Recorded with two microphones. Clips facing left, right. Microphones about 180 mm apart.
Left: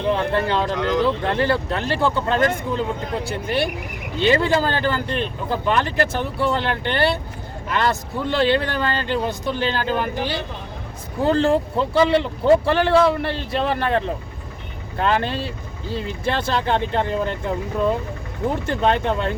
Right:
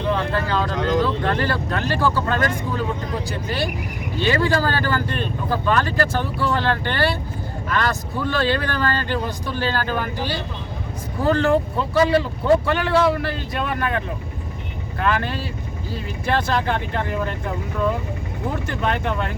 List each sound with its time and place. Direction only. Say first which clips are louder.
0.1 s speech: left 2 dB; 25° left (ahead or behind)
18.6 s speech: left 5 dB; 30° left (ahead or behind)